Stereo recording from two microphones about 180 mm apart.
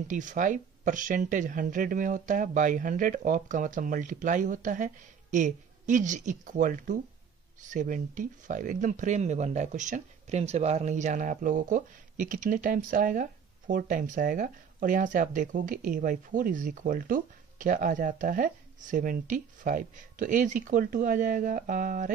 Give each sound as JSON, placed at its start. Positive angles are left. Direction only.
{"t": 0.1, "sound": "speech", "side_deg": -45}